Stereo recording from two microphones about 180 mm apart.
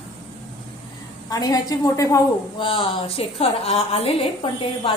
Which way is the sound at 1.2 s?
20° left (ahead or behind).